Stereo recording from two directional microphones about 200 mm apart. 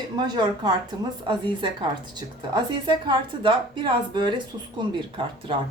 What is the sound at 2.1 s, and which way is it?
A woman's voice, 20° right (ahead or behind).